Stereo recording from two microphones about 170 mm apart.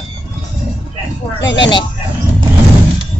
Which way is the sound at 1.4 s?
90° left.